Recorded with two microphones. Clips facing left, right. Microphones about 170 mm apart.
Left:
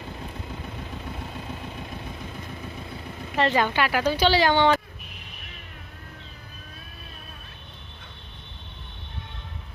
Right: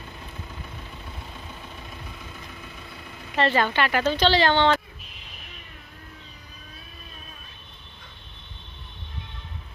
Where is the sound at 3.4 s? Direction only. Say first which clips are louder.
Even; 15° left (ahead or behind).